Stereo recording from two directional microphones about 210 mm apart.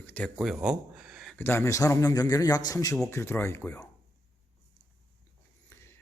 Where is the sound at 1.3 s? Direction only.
10° left (ahead or behind).